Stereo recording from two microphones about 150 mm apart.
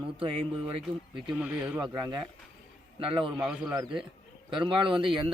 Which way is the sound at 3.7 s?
25° right (ahead or behind).